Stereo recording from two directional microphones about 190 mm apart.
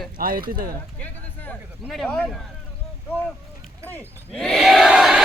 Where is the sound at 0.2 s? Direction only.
50° right (ahead or behind).